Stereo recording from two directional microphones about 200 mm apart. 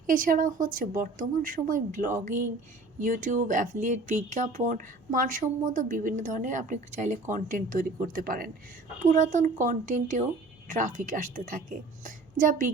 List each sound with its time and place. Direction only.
0.1 s a woman's voice: 45° right (ahead or behind)